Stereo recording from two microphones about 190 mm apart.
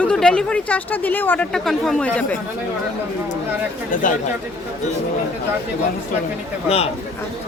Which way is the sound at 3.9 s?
45° left (ahead or behind).